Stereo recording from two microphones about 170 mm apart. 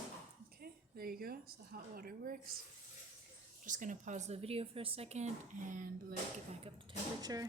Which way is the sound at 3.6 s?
50° right (ahead or behind).